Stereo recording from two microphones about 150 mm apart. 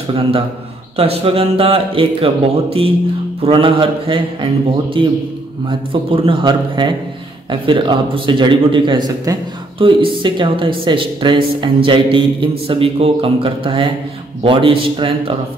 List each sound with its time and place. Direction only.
0.9 s speech: 40° right (ahead or behind)